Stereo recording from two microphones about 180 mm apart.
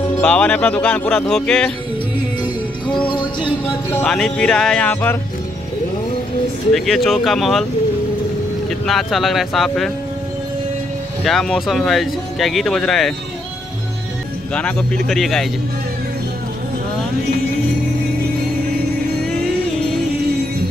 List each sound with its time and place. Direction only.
0.2 s speech: 5° left (ahead or behind)
3.1 s music: 25° left (ahead or behind)
3.9 s speech: 5° left (ahead or behind)
6.7 s speech: centre (ahead or behind)
8.6 s speech: centre (ahead or behind)
11.2 s speech: centre (ahead or behind)
14.5 s speech: 5° left (ahead or behind)